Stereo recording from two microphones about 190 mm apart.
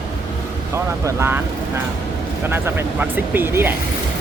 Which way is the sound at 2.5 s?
10° right (ahead or behind).